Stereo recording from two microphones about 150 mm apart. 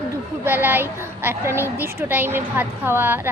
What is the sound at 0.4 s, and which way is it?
A woman's voice, 15° right (ahead or behind).